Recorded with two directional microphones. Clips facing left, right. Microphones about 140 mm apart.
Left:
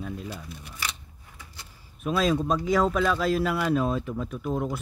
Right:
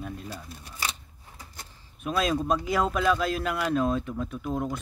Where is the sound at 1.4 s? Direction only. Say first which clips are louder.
Right 2 dB; 45° right (ahead or behind).